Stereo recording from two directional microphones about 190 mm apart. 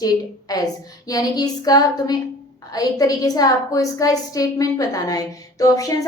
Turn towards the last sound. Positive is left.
turn(degrees=20)  # may be behind; listen again after turning